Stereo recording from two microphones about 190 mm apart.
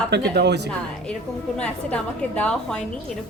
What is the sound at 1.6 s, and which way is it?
A woman's voice, 5° left (ahead or behind).